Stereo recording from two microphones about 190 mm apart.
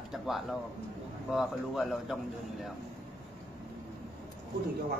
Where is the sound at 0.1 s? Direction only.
Centre (ahead or behind).